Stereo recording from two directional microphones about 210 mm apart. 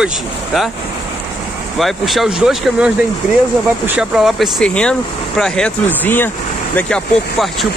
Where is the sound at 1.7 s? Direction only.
Centre (ahead or behind).